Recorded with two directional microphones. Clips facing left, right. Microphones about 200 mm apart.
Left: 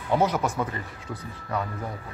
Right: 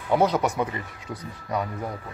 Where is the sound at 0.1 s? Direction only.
15° right (ahead or behind).